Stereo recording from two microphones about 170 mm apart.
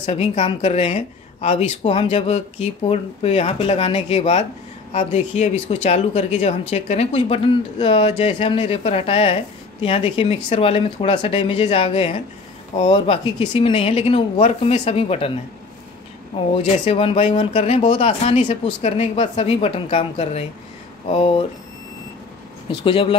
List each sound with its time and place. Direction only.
0.0 s speech: 35° left (ahead or behind)
16.3 s speech: 35° left (ahead or behind)
22.8 s speech: 30° left (ahead or behind)